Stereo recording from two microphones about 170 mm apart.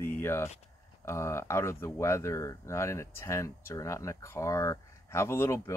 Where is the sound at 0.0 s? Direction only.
15° left (ahead or behind).